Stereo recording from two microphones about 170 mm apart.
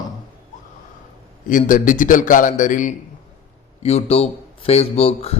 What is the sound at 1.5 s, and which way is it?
A man's voice, 50° left (ahead or behind).